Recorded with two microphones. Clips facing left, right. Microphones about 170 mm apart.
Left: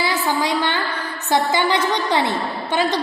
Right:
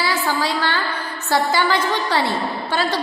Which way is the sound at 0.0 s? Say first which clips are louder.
Left 1 dB; 20° left (ahead or behind).